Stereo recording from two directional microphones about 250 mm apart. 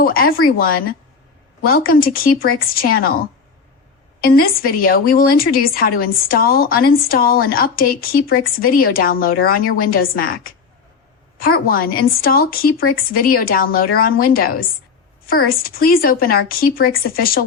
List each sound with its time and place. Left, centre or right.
0.0 s speech: left